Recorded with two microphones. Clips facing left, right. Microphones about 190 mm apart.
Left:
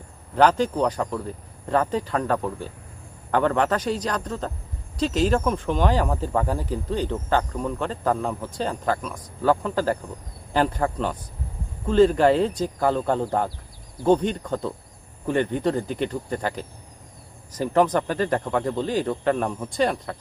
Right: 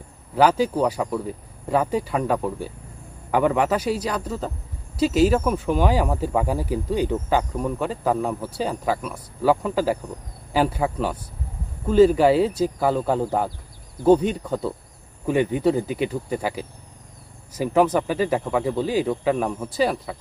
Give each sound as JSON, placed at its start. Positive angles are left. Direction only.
{"t": 0.3, "sound": "speech", "side_deg": -5}